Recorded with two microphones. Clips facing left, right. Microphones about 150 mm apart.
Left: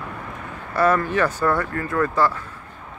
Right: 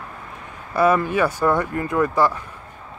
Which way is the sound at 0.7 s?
10° right (ahead or behind).